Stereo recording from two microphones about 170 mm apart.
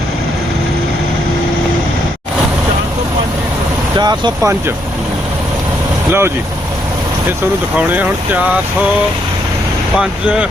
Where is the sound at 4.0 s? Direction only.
25° right (ahead or behind).